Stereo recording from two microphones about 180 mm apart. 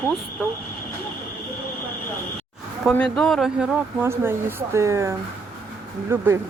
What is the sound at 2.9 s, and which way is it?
Speech, 5° left (ahead or behind).